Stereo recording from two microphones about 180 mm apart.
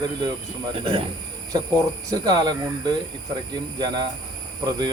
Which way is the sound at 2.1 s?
20° right (ahead or behind).